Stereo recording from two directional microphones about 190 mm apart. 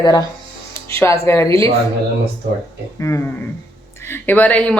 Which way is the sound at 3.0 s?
15° left (ahead or behind).